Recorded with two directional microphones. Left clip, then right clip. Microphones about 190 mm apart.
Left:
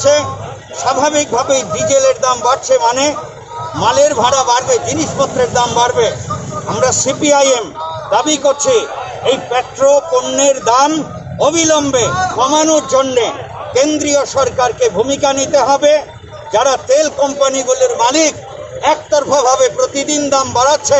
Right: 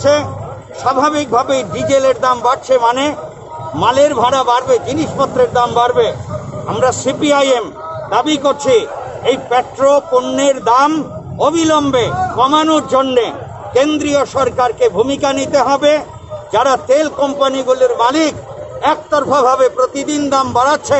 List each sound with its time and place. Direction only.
0.0 s a man's voice: 5° right (ahead or behind)
7.2 s a man's voice: 5° right (ahead or behind)